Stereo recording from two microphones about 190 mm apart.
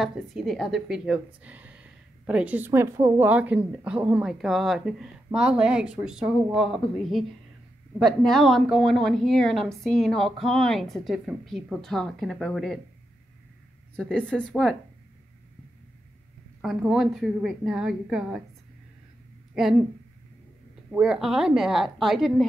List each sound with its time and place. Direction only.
0.0 s a woman's voice: centre (ahead or behind)
13.9 s a woman's voice: 5° left (ahead or behind)
16.6 s a woman's voice: 5° right (ahead or behind)
20.9 s a woman's voice: 5° right (ahead or behind)